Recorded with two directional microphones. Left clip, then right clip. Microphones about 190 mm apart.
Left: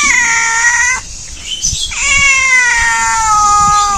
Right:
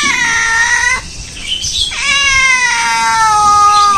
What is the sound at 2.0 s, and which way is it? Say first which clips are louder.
Cat: left 1 dB; 5° left (ahead or behind).